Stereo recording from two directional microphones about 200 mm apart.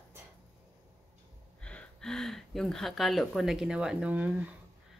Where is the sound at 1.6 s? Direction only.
5° left (ahead or behind).